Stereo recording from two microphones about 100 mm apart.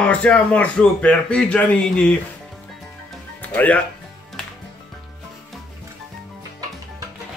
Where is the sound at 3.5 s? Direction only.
15° left (ahead or behind).